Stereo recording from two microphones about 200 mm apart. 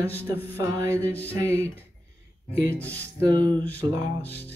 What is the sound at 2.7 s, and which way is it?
Speech, 10° left (ahead or behind).